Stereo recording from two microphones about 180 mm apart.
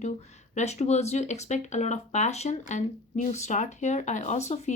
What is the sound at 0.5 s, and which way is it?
A woman's voice, 40° left (ahead or behind).